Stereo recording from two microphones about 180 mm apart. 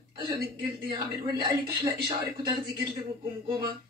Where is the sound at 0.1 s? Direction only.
30° right (ahead or behind).